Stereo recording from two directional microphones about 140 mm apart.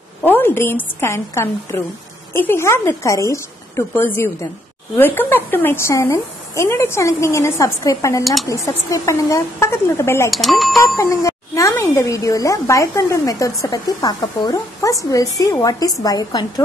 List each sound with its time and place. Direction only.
0.2 s a woman's voice: 15° left (ahead or behind)
8.2 s speech: centre (ahead or behind)
8.5 s speech: 20° left (ahead or behind)
10.3 s speech: centre (ahead or behind)
10.8 s speech: 20° left (ahead or behind)